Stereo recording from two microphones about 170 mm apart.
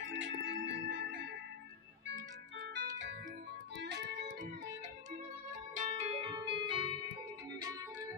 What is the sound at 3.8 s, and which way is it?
Music, 80° right.